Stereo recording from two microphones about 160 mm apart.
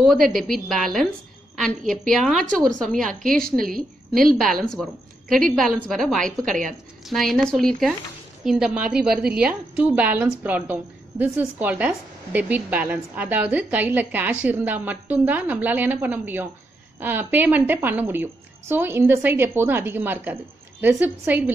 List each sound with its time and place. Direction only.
0.4 s a woman's voice: centre (ahead or behind)
2.0 s a woman's voice: centre (ahead or behind)
3.3 s a woman's voice: 65° right (ahead or behind)
4.1 s a woman's voice: centre (ahead or behind)